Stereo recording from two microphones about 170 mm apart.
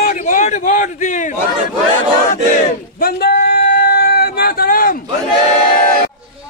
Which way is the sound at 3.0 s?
60° left (ahead or behind).